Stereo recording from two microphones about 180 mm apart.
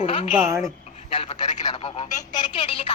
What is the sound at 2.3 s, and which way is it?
Telephone, 25° left (ahead or behind).